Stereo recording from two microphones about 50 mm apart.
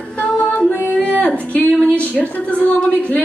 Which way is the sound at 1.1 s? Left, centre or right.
Left.